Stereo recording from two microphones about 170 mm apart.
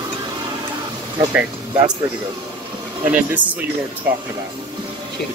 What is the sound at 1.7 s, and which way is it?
Speech, 25° right (ahead or behind).